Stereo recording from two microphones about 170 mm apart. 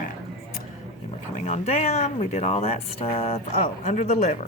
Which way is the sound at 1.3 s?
40° left (ahead or behind).